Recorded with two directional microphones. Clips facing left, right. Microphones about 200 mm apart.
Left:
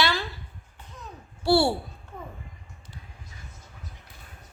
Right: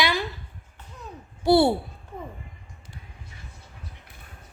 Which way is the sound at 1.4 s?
20° right (ahead or behind).